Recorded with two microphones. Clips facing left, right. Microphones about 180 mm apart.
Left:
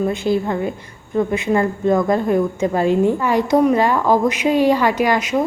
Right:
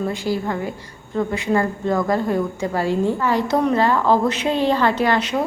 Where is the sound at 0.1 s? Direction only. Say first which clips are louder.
Left 4 dB; 20° left (ahead or behind).